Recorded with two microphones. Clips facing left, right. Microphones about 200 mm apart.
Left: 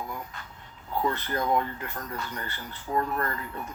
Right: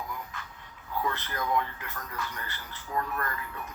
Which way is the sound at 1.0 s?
30° left (ahead or behind).